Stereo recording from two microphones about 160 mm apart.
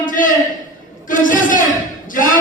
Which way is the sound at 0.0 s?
55° left (ahead or behind).